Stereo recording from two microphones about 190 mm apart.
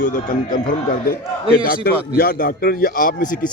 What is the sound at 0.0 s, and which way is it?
A man's voice, 45° left (ahead or behind).